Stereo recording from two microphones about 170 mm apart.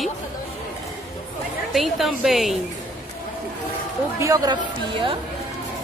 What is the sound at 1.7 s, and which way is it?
Speech, centre (ahead or behind).